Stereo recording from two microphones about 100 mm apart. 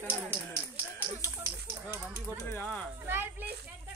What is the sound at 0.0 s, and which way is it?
Speech, 20° right (ahead or behind).